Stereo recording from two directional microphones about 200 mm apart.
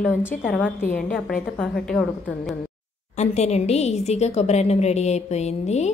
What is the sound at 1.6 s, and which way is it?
Speech, centre (ahead or behind).